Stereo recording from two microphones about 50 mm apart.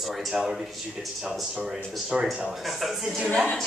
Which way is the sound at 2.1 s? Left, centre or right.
Centre.